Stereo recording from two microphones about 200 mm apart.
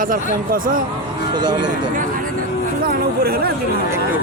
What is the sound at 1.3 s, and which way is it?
Speech, 20° right (ahead or behind).